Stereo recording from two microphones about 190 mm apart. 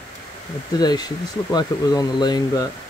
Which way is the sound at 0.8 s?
20° left (ahead or behind).